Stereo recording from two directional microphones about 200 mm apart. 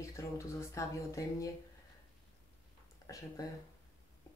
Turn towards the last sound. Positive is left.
turn(degrees=15)  # may be behind; listen again after turning